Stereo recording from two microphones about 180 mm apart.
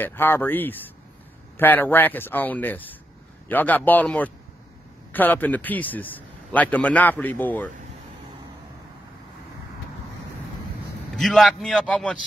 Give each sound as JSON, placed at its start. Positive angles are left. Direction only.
{"t": 0.0, "sound": "a man's voice", "side_deg": 10}
{"t": 11.1, "sound": "a man's voice", "side_deg": 0}